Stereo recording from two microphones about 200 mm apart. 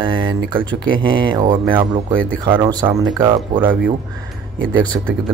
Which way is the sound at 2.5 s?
20° right (ahead or behind).